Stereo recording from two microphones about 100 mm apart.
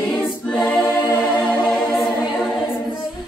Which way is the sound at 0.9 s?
20° left (ahead or behind).